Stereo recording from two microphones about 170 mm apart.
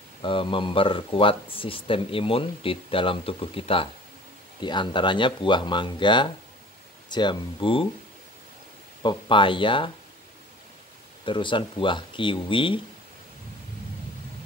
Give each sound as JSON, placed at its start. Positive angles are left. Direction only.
{"t": 0.2, "sound": "speech", "side_deg": 30}
{"t": 9.0, "sound": "speech", "side_deg": 30}
{"t": 11.2, "sound": "speech", "side_deg": 30}